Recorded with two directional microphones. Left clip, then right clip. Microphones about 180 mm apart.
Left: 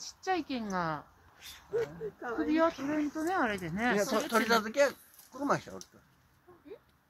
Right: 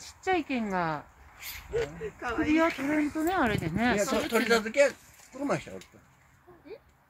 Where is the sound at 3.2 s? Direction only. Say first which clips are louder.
Right 4 dB; 40° right (ahead or behind).